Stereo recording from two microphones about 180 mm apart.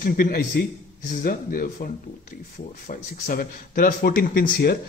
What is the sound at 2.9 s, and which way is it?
A man's voice, 50° left (ahead or behind).